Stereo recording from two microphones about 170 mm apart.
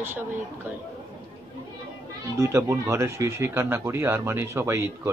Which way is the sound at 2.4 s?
15° right (ahead or behind).